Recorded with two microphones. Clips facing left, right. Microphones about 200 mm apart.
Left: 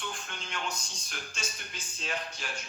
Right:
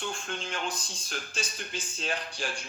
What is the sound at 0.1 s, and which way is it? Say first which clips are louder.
A man's voice: right 5 dB; 30° right (ahead or behind).